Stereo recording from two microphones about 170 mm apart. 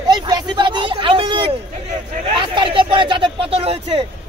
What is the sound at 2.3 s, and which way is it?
A man's voice, 30° right (ahead or behind).